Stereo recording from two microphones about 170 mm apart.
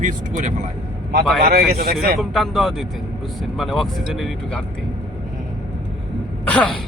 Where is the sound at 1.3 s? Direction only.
65° right (ahead or behind).